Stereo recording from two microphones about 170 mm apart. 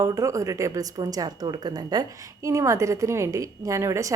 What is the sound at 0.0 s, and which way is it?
A woman's voice, 15° right (ahead or behind).